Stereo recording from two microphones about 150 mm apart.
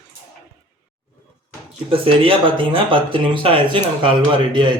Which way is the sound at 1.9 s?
35° right (ahead or behind).